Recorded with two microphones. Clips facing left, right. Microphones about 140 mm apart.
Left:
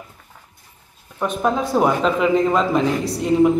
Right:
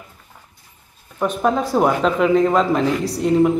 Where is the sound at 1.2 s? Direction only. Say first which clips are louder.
Right 1 dB; centre (ahead or behind).